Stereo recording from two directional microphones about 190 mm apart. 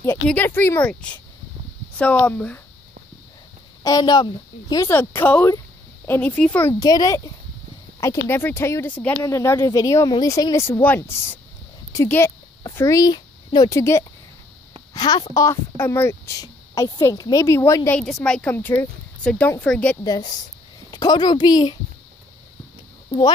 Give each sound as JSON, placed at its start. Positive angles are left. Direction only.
{"t": 0.0, "sound": "speech", "side_deg": 10}
{"t": 3.8, "sound": "speech", "side_deg": 20}
{"t": 8.3, "sound": "speech", "side_deg": 10}
{"t": 17.9, "sound": "speech", "side_deg": 5}
{"t": 20.0, "sound": "a woman's voice", "side_deg": 20}
{"t": 23.0, "sound": "a sound", "side_deg": 20}